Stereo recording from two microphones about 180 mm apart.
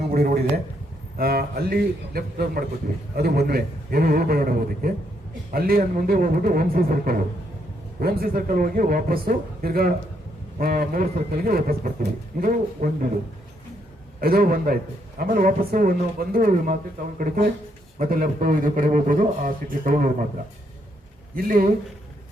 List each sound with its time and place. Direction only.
0.1 s a man's voice: 55° right (ahead or behind)
14.2 s a man's voice: 55° right (ahead or behind)
21.3 s a man's voice: 50° right (ahead or behind)